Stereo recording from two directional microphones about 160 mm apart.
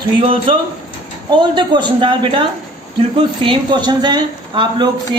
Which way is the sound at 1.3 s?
30° right (ahead or behind).